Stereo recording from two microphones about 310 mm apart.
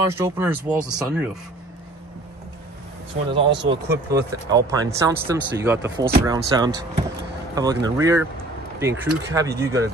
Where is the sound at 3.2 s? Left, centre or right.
Centre.